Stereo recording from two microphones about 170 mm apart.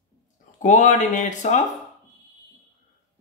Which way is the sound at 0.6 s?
45° left (ahead or behind).